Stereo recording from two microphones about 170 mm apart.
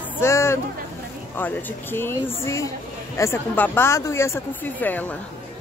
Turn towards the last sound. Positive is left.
turn(degrees=10)  # may be behind; listen again after turning